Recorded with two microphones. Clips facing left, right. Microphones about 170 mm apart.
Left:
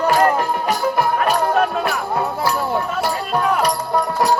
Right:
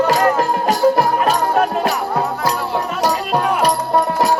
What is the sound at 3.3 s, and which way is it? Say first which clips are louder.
Music: left 1 dB; 30° right (ahead or behind).